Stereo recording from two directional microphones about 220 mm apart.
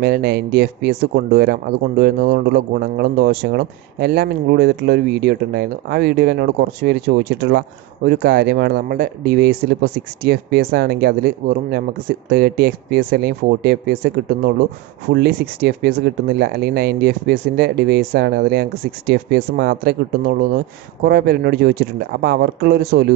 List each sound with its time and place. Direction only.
0.0 s speech: 45° right (ahead or behind)